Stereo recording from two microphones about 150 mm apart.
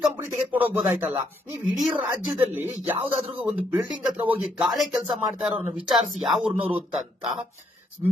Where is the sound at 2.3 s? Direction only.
15° right (ahead or behind).